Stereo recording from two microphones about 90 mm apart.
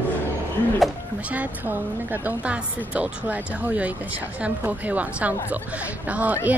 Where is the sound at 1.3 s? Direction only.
20° right (ahead or behind).